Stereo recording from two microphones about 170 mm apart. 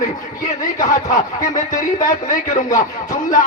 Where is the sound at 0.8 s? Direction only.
50° left (ahead or behind).